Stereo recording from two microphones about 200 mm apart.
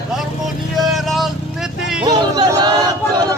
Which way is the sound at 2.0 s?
20° right (ahead or behind).